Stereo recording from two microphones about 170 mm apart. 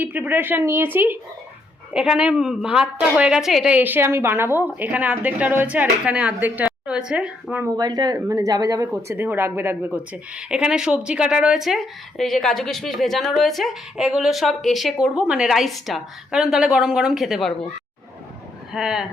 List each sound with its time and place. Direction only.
0.0 s a woman's voice: 10° right (ahead or behind)
7.6 s speech: 25° right (ahead or behind); by 17.5 s centre (ahead or behind)
18.7 s speech: 5° right (ahead or behind)